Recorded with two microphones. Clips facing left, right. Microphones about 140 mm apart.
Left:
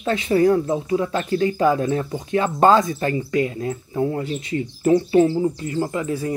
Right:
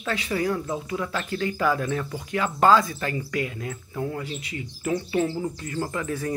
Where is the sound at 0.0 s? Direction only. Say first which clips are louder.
Left 9 dB; 25° left (ahead or behind).